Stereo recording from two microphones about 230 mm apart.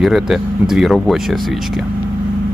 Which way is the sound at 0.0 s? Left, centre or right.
Centre.